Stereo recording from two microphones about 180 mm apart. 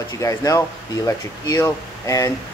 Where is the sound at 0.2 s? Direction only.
20° left (ahead or behind).